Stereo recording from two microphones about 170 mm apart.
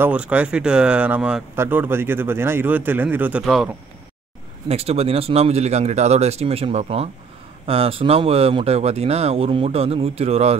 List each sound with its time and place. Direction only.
0.0 s speech: 10° right (ahead or behind)
4.6 s speech: 35° right (ahead or behind)